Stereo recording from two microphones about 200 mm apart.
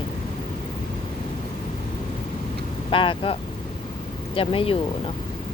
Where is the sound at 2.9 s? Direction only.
25° left (ahead or behind).